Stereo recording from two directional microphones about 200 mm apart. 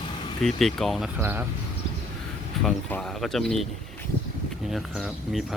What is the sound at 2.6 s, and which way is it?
Speech, centre (ahead or behind).